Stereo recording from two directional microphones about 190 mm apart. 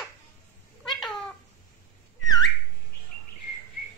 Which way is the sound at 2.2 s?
20° left (ahead or behind).